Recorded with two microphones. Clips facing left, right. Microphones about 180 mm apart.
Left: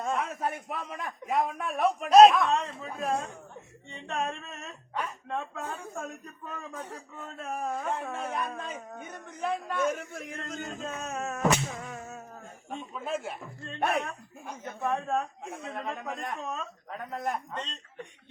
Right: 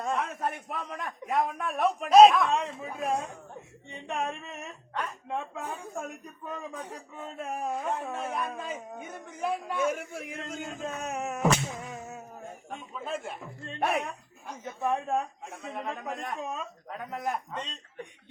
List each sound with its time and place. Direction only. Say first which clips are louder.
0.0 s a man's voice: even; centre (ahead or behind)
2.5 s speech: even; 15° right (ahead or behind)
7.9 s speech: right 1 dB; centre (ahead or behind); by 11.4 s 15° right (ahead or behind)
11.7 s music: even; 15° right (ahead or behind)
12.7 s a man's voice: left 3 dB; 5° left (ahead or behind)
14.8 s speech: right 1 dB; 15° right (ahead or behind)
15.4 s a man's voice: even; centre (ahead or behind)